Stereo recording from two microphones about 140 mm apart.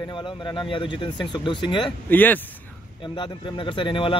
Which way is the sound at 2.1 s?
15° left (ahead or behind).